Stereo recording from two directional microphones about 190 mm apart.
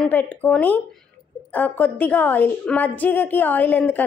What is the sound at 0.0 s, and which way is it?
A woman's voice, 10° left (ahead or behind).